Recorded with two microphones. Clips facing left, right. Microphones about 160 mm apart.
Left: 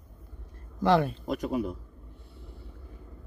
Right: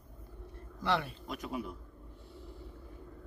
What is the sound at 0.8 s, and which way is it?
Speech, 45° left (ahead or behind).